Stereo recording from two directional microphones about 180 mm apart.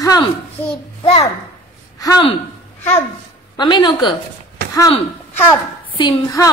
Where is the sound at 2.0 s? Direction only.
25° left (ahead or behind).